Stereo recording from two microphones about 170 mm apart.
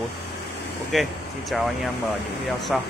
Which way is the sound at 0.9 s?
Centre (ahead or behind).